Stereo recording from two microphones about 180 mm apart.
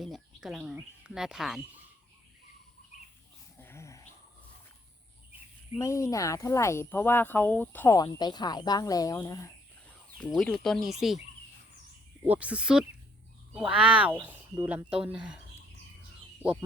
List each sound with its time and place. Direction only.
0.0 s speech: centre (ahead or behind)
3.6 s a sound: 15° left (ahead or behind)
5.8 s speech: 15° left (ahead or behind)
10.3 s speech: centre (ahead or behind)
12.2 s speech: 10° right (ahead or behind)
16.4 s bird: 10° right (ahead or behind)